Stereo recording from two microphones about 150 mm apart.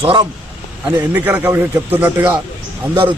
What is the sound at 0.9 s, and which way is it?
Speech, 10° right (ahead or behind).